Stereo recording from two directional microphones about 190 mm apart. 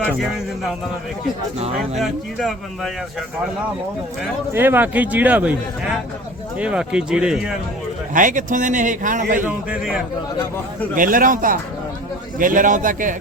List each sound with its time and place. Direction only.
0.1 s speech: centre (ahead or behind)
2.0 s speech: centre (ahead or behind)
4.5 s a man's voice: 10° right (ahead or behind)
8.1 s a man's voice: 45° right (ahead or behind)
9.4 s speech: 5° right (ahead or behind)
10.9 s a man's voice: 45° right (ahead or behind)